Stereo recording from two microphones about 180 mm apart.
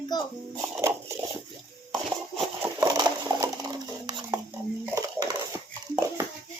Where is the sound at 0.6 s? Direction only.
15° right (ahead or behind).